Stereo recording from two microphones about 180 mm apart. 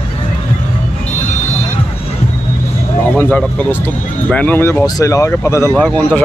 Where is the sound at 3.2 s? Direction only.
5° left (ahead or behind).